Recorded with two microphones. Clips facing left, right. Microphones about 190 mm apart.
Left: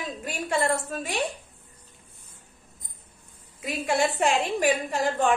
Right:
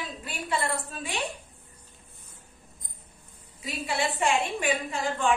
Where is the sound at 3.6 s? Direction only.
50° left (ahead or behind).